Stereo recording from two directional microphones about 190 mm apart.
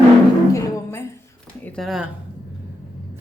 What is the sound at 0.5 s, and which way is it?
Speech, 15° left (ahead or behind).